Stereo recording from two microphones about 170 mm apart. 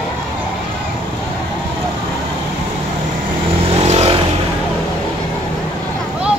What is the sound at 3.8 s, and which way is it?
Vehicle, 40° right (ahead or behind).